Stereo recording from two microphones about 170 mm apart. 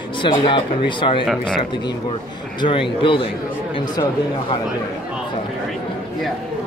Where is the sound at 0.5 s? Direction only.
30° left (ahead or behind).